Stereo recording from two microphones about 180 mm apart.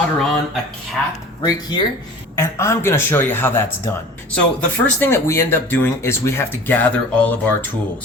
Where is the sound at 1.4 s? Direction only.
25° left (ahead or behind).